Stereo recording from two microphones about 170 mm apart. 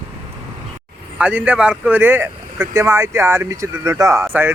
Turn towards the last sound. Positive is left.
turn(degrees=-15)  # may be behind; listen again after turning